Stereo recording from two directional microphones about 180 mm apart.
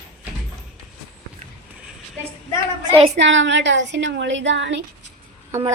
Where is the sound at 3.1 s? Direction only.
85° right.